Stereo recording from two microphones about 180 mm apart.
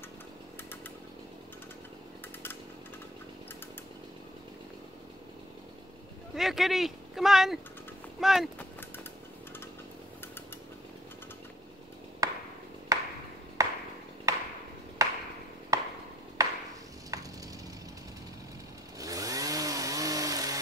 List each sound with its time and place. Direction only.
6.3 s speech: centre (ahead or behind)
12.2 s chop: 20° right (ahead or behind)
12.9 s ping: 20° right (ahead or behind)
15.0 s a sound: 20° right (ahead or behind)
15.7 s chop: 20° right (ahead or behind)
18.9 s chainsaw: 20° right (ahead or behind)